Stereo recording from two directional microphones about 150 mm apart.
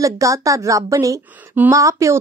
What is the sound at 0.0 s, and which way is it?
A woman's voice, 20° right (ahead or behind).